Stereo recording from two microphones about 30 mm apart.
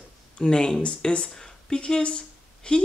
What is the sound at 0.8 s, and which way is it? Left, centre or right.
Speech, left.